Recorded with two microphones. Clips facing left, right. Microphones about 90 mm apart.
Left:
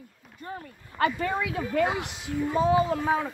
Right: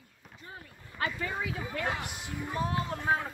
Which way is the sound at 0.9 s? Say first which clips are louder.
Left 8 dB; 75° left (ahead or behind).